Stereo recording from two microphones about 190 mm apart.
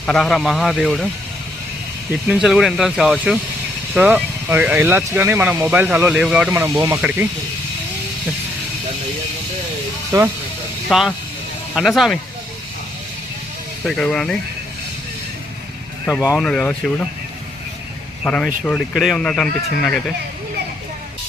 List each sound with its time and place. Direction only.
0.0 s speech: 5° left (ahead or behind)
2.2 s speech: 5° right (ahead or behind)
6.5 s speech: 15° right (ahead or behind)
10.1 s speech: 15° right (ahead or behind)
10.8 s speech: centre (ahead or behind)
13.8 s speech: 5° left (ahead or behind)
16.0 s speech: 15° left (ahead or behind)
18.2 s speech: 5° left (ahead or behind)